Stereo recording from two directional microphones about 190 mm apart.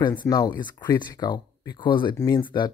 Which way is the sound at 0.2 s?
20° left (ahead or behind).